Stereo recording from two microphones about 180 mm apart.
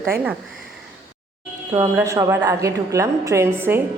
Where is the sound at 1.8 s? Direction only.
15° right (ahead or behind).